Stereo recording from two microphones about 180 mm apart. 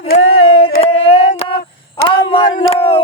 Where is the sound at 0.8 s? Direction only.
30° left (ahead or behind).